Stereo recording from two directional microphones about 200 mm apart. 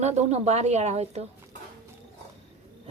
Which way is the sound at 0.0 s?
35° right (ahead or behind).